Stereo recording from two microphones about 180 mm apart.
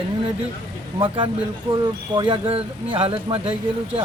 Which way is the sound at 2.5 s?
30° right (ahead or behind).